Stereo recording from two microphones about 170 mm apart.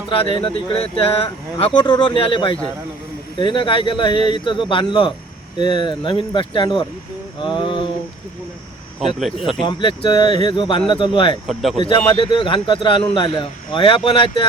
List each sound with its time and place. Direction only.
0.1 s a man's voice: 30° left (ahead or behind)
9.0 s speech: centre (ahead or behind)
9.6 s a man's voice: 30° left (ahead or behind)
11.4 s speech: centre (ahead or behind)
11.8 s a man's voice: 30° left (ahead or behind)